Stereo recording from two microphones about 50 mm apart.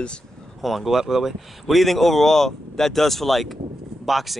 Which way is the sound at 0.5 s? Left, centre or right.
Centre.